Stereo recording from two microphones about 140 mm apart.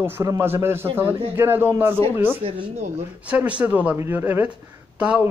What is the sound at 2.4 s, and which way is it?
Speech, 45° right (ahead or behind).